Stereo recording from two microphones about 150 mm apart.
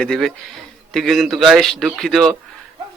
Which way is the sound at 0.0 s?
5° left (ahead or behind).